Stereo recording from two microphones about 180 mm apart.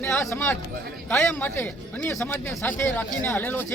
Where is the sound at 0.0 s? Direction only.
15° left (ahead or behind).